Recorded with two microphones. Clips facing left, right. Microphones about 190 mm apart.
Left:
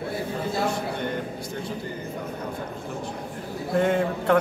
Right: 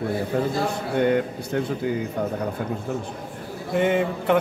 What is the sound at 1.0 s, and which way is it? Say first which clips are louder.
Speech: right 8 dB; 70° right (ahead or behind).